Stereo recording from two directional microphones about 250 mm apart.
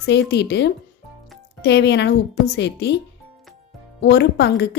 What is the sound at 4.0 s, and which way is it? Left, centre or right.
Speech, left.